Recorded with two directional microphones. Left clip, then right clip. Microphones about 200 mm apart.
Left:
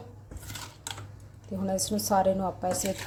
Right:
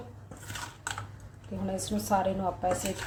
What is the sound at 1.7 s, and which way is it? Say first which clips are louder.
Speech: left 3 dB; 25° left (ahead or behind).